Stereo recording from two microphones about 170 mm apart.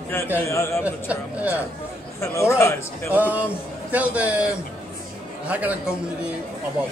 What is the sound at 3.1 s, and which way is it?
A man's voice, 10° right (ahead or behind).